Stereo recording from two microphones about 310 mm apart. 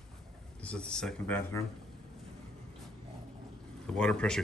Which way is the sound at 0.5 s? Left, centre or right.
Centre.